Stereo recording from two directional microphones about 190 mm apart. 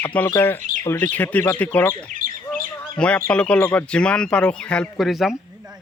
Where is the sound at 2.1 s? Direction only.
45° right (ahead or behind).